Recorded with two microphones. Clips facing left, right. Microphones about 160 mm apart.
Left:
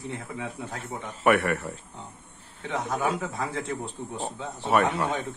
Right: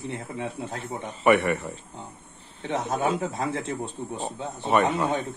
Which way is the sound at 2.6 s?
25° right (ahead or behind).